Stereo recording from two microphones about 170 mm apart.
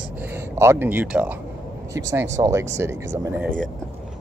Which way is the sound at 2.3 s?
15° right (ahead or behind).